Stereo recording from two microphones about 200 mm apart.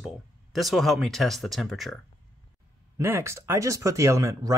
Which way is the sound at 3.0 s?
15° right (ahead or behind).